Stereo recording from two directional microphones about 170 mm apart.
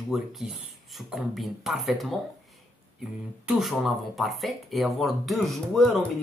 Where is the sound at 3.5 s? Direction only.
Centre (ahead or behind).